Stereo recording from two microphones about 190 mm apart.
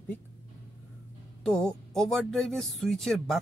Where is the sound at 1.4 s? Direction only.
5° left (ahead or behind).